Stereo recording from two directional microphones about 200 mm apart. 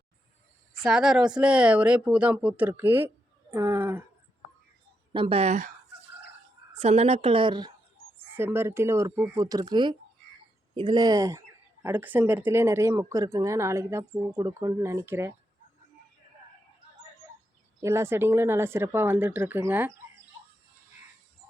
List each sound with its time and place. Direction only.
0.8 s speech: centre (ahead or behind)
5.1 s a woman's voice: 25° right (ahead or behind)
6.7 s a woman's voice: 30° right (ahead or behind)
8.4 s speech: 10° right (ahead or behind)
17.8 s speech: 15° right (ahead or behind)